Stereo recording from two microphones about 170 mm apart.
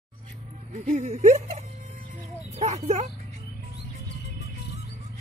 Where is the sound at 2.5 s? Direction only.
40° right (ahead or behind).